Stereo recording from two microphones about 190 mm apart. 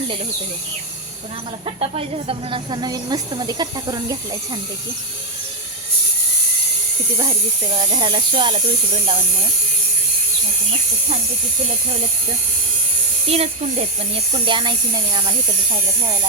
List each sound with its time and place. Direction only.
1.6 s speech: 30° right (ahead or behind)
7.2 s speech: 25° right (ahead or behind)
13.2 s speech: 30° right (ahead or behind)